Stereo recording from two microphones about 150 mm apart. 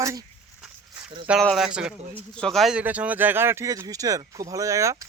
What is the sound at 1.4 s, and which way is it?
Speech, centre (ahead or behind).